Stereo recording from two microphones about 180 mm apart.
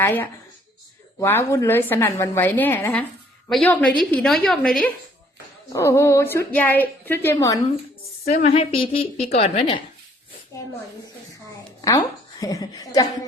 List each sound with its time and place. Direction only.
0.0 s a woman's voice: 10° left (ahead or behind)
5.7 s a woman's voice: 15° left (ahead or behind)
8.3 s a woman's voice: 35° left (ahead or behind)
10.5 s a woman's voice: 20° left (ahead or behind)
11.8 s a woman's voice: 20° left (ahead or behind)